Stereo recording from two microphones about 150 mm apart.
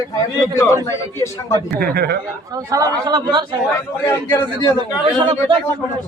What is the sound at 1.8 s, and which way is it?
Speech, 90° right.